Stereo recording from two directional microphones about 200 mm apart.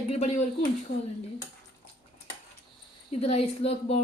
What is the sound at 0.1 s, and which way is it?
Speech, 35° left (ahead or behind).